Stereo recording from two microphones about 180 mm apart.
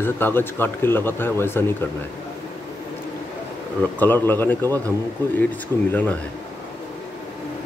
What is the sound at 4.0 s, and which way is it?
Speech, 10° left (ahead or behind).